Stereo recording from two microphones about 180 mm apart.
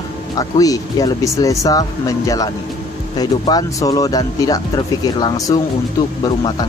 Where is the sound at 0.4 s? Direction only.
20° left (ahead or behind).